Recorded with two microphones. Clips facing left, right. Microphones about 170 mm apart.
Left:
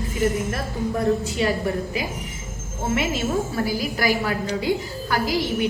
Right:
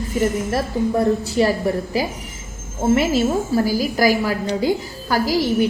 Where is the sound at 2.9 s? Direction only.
35° right (ahead or behind).